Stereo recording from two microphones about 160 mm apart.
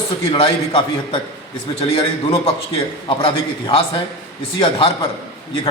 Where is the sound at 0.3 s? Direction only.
30° left (ahead or behind).